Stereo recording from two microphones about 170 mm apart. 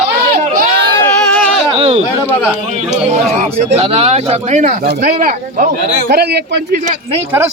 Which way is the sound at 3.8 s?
40° right (ahead or behind).